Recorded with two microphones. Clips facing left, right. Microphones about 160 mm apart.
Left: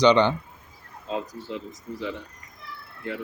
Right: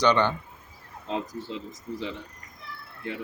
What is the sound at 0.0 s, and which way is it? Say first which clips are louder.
Speech: left 4 dB; 15° left (ahead or behind).